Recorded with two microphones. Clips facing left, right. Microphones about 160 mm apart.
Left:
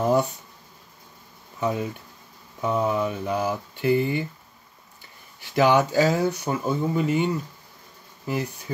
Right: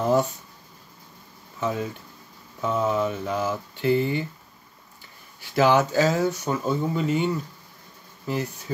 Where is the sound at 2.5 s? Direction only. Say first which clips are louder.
Even; 15° left (ahead or behind).